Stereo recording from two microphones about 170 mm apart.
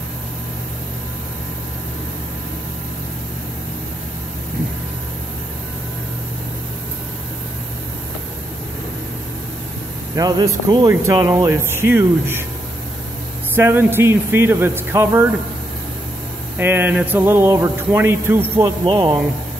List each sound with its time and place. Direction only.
10.1 s speech: 20° right (ahead or behind)
13.6 s speech: 15° right (ahead or behind)
16.5 s speech: 10° right (ahead or behind)
18.9 s speech: 25° right (ahead or behind)